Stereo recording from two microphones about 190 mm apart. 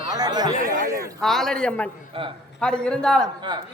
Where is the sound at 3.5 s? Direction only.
25° right (ahead or behind).